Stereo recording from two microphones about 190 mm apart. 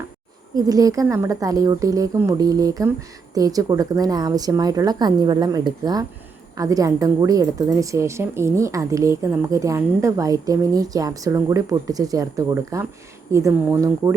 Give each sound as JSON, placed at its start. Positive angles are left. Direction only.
{"t": 0.5, "sound": "a woman's voice", "side_deg": -20}